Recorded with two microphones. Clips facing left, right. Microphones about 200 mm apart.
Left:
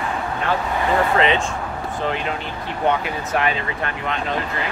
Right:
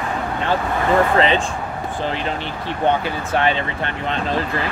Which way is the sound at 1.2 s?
35° right (ahead or behind).